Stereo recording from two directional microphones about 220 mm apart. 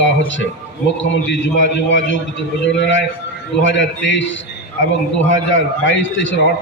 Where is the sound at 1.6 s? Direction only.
55° left (ahead or behind).